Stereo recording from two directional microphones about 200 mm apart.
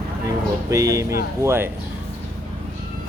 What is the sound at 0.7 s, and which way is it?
Speech, 15° right (ahead or behind).